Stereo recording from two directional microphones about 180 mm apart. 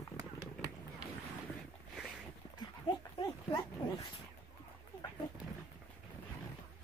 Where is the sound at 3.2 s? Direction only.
25° left (ahead or behind).